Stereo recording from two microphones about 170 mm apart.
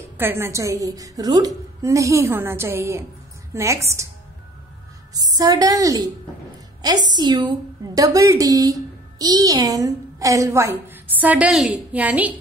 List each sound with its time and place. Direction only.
0.2 s a woman's voice: 15° right (ahead or behind)
5.1 s a woman's voice: 20° right (ahead or behind)
7.1 s a woman's voice: 25° right (ahead or behind); by 12.4 s 10° right (ahead or behind)